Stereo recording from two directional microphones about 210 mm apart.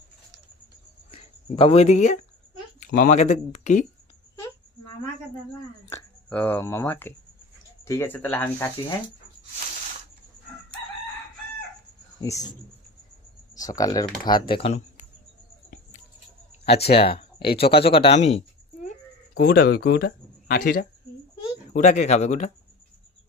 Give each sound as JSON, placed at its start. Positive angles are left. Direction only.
{"t": 1.1, "sound": "speech", "side_deg": 25}
{"t": 5.8, "sound": "speech", "side_deg": 10}
{"t": 12.2, "sound": "speech", "side_deg": 15}
{"t": 16.6, "sound": "speech", "side_deg": 50}
{"t": 17.0, "sound": "speech", "side_deg": 25}